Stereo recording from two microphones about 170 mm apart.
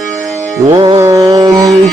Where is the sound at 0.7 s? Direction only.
25° right (ahead or behind).